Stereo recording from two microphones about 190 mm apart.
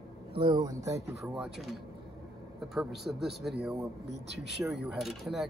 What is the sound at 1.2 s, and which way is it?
Speech, centre (ahead or behind).